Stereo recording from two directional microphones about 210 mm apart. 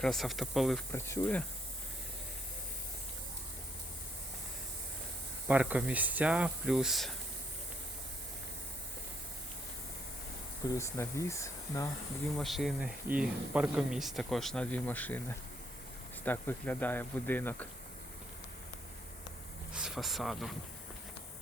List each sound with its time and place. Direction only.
0.0 s speech: centre (ahead or behind)
0.9 s speech: 10° left (ahead or behind)
5.5 s speech: 5° right (ahead or behind)
10.8 s speech: 15° left (ahead or behind)
12.4 s speech: centre (ahead or behind)
16.2 s speech: 10° left (ahead or behind)
19.7 s speech: 5° right (ahead or behind)